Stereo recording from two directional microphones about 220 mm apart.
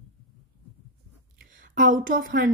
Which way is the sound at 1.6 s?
40° right (ahead or behind).